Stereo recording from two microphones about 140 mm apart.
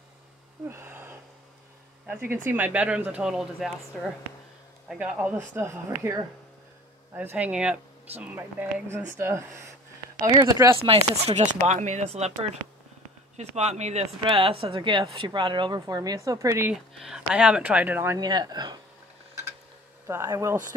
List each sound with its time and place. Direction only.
0.7 s a sound: 15° right (ahead or behind)
2.0 s a woman's voice: 10° right (ahead or behind)
4.8 s speech: 10° right (ahead or behind)
7.2 s speech: 10° right (ahead or behind)
10.8 s speech: 45° right (ahead or behind)
13.4 s speech: 55° right (ahead or behind)
14.2 s a woman's voice: 40° right (ahead or behind); by 16.7 s 15° right (ahead or behind)
16.7 s speech: 5° right (ahead or behind)
18.2 s speech: 30° right (ahead or behind)
20.1 s speech: 20° right (ahead or behind)